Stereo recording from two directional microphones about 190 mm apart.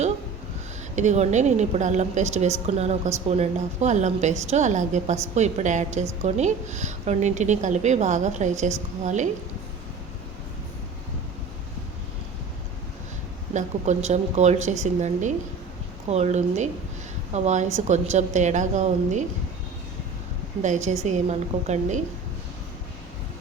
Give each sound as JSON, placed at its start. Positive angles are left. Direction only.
{"t": 0.9, "sound": "a woman's voice", "side_deg": -40}
{"t": 13.5, "sound": "a woman's voice", "side_deg": -40}
{"t": 20.6, "sound": "a woman's voice", "side_deg": -40}